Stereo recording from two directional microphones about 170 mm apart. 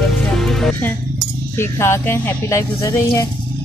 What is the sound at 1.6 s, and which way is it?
Speech, 15° left (ahead or behind).